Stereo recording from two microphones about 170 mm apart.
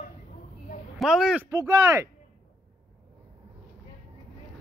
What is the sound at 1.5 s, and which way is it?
Speech, 20° right (ahead or behind).